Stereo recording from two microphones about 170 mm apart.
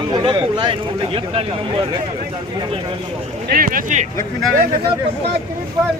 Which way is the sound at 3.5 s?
60° right (ahead or behind).